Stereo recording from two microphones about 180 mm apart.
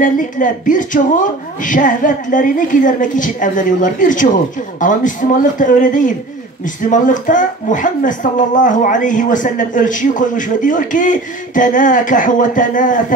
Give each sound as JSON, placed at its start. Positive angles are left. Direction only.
{"t": 0.0, "sound": "speech", "side_deg": 45}